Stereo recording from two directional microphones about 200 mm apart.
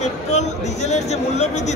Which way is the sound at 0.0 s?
35° left (ahead or behind).